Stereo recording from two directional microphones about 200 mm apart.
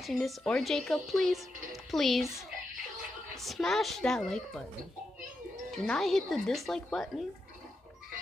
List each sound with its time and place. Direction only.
0.0 s speech: centre (ahead or behind)
3.3 s speech: centre (ahead or behind)
5.7 s speech: centre (ahead or behind)